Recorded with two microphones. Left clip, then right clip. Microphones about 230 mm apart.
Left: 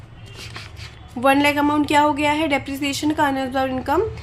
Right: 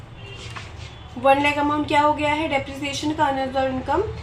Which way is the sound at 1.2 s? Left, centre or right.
Left.